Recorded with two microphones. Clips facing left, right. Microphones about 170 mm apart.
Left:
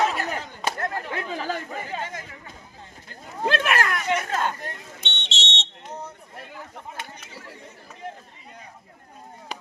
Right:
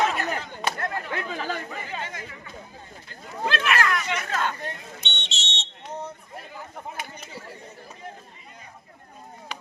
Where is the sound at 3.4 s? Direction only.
45° left (ahead or behind).